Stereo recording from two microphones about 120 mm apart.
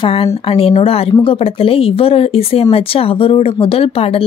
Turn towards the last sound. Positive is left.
turn(degrees=55)  # may be behind; listen again after turning